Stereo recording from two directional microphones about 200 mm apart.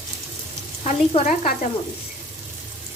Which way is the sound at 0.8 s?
35° left (ahead or behind).